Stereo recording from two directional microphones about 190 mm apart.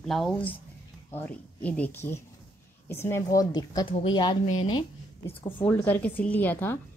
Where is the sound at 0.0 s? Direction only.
Centre (ahead or behind); by 4.8 s 25° left (ahead or behind).